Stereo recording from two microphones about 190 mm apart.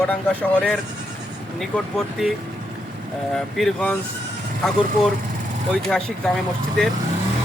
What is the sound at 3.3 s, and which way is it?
Speech, 5° left (ahead or behind).